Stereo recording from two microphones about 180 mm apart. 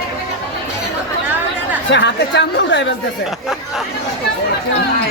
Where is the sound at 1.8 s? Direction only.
75° left (ahead or behind).